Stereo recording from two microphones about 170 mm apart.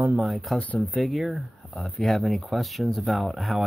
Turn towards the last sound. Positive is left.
turn(degrees=0)  # may be behind; listen again after turning